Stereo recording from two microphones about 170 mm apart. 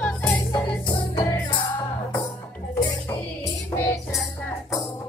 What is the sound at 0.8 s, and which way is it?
Music, 25° left (ahead or behind).